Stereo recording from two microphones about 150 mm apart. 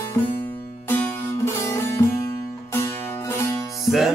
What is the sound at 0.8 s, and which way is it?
Music, 15° left (ahead or behind).